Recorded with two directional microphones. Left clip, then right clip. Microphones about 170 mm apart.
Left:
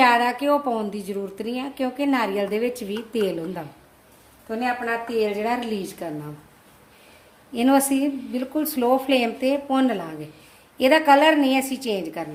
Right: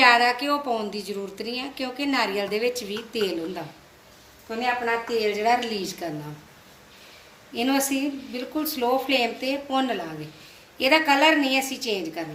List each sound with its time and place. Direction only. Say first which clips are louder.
0.0 s a woman's voice: even; 45° left (ahead or behind)
5.0 s a woman's voice: right 1 dB; 50° left (ahead or behind)
7.5 s speech: left 5 dB; 55° left (ahead or behind)